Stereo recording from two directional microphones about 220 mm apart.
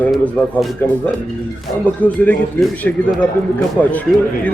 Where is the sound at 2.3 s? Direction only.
5° left (ahead or behind).